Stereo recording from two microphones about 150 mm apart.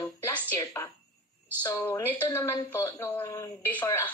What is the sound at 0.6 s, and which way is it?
A woman's voice, 20° left (ahead or behind).